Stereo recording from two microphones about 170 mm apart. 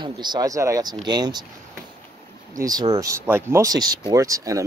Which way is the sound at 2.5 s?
20° right (ahead or behind).